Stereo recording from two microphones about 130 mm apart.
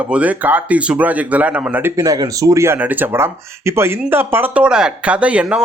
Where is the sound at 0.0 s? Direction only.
10° right (ahead or behind).